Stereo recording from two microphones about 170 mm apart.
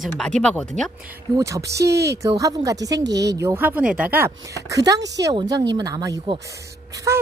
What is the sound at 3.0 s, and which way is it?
Speech, 90° right.